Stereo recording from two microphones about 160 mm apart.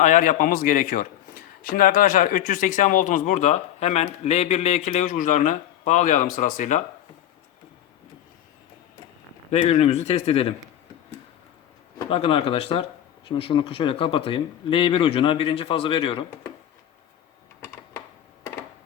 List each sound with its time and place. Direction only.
0.0 s speech: 55° left (ahead or behind)
9.5 s speech: 45° left (ahead or behind)
12.0 s speech: 35° left (ahead or behind)